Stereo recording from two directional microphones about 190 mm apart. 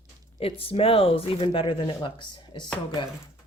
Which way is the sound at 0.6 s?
30° left (ahead or behind).